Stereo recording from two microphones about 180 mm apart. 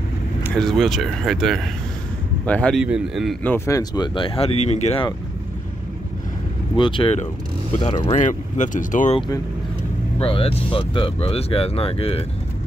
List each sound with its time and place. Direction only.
0.6 s speech: centre (ahead or behind)
3.4 s speech: 15° left (ahead or behind); by 5.0 s 35° left (ahead or behind)
6.8 s speech: 25° left (ahead or behind); by 9.2 s 45° left (ahead or behind)
10.2 s speech: 30° left (ahead or behind)